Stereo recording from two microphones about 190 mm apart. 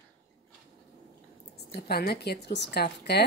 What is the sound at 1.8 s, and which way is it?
A woman's voice, 55° left (ahead or behind).